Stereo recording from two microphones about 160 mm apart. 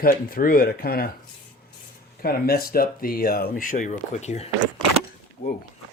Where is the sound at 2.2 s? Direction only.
70° left (ahead or behind); by 4.5 s 45° left (ahead or behind).